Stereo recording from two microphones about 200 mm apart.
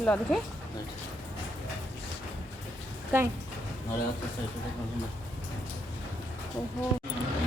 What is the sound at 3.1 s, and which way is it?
Speech, 10° right (ahead or behind).